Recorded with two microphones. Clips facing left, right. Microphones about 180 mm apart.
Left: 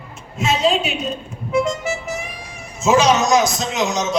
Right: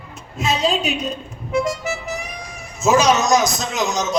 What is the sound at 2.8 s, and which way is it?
Speech, 40° right (ahead or behind).